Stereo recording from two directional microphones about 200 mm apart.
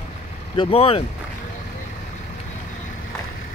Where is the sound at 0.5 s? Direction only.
30° left (ahead or behind).